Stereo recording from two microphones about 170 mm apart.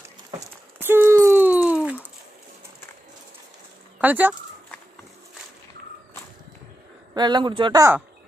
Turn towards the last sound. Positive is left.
turn(degrees=-20)  # may be behind; listen again after turning